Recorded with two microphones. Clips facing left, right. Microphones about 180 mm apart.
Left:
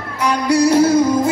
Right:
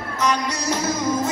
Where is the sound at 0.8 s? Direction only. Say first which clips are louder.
Left 12 dB; 35° left (ahead or behind).